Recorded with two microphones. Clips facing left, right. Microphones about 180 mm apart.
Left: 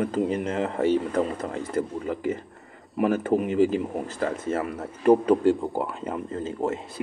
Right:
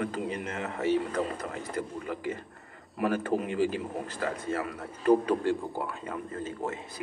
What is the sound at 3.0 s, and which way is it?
Speech, 20° left (ahead or behind).